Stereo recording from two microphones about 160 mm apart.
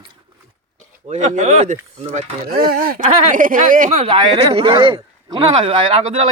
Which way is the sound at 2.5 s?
70° right (ahead or behind).